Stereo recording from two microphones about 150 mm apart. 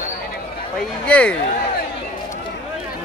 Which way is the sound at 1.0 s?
10° left (ahead or behind).